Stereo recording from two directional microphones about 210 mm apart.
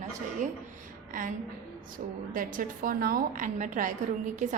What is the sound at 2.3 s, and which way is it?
A woman's voice, 40° right (ahead or behind).